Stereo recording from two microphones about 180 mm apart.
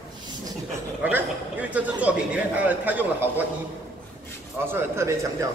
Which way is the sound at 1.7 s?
5° right (ahead or behind).